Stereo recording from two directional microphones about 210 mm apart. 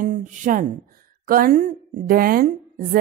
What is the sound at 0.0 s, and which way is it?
A woman's voice, 35° right (ahead or behind).